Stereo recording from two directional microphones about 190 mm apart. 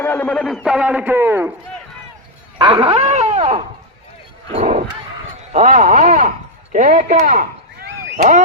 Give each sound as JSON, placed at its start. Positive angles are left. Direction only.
{"t": 0.0, "sound": "a man's voice", "side_deg": 10}
{"t": 2.6, "sound": "dog", "side_deg": -25}
{"t": 5.5, "sound": "speech", "side_deg": -35}